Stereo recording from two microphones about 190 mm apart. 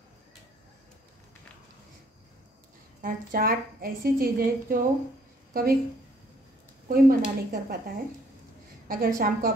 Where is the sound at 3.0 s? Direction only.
50° right (ahead or behind).